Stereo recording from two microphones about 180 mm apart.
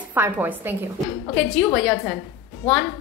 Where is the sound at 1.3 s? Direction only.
Centre (ahead or behind).